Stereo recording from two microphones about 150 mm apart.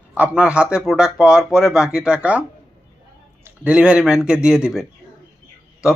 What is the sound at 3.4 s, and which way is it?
Speech, 10° right (ahead or behind).